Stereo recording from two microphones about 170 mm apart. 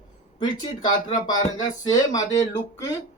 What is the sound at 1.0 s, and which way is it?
Speech, 25° left (ahead or behind).